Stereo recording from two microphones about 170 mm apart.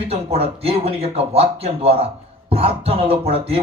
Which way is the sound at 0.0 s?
35° right (ahead or behind).